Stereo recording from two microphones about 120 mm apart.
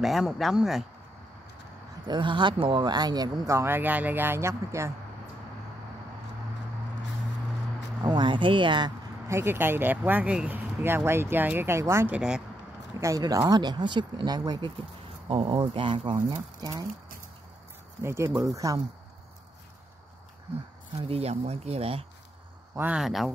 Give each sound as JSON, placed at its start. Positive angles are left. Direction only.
{"t": 0.0, "sound": "speech", "side_deg": 0}
{"t": 2.0, "sound": "speech", "side_deg": -40}
{"t": 8.0, "sound": "speech", "side_deg": -40}
{"t": 9.3, "sound": "speech", "side_deg": -20}
{"t": 12.1, "sound": "speech", "side_deg": -5}
{"t": 13.0, "sound": "speech", "side_deg": -30}
{"t": 15.2, "sound": "speech", "side_deg": -45}
{"t": 18.0, "sound": "speech", "side_deg": -20}
{"t": 21.0, "sound": "speech", "side_deg": -55}
{"t": 22.8, "sound": "speech", "side_deg": -15}
{"t": 23.0, "sound": "speech", "side_deg": 0}